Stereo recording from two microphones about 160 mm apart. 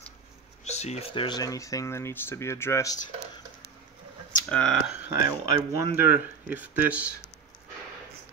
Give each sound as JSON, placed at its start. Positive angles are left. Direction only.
{"t": 0.7, "sound": "speech", "side_deg": 45}
{"t": 4.5, "sound": "speech", "side_deg": 5}
{"t": 5.1, "sound": "speech", "side_deg": -20}